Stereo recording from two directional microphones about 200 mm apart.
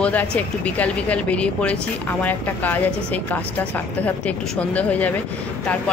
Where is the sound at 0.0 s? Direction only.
5° left (ahead or behind).